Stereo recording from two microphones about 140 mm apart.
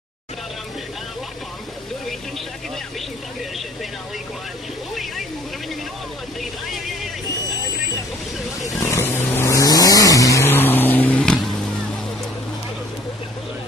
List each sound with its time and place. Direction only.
8.5 s vehicle: 25° left (ahead or behind)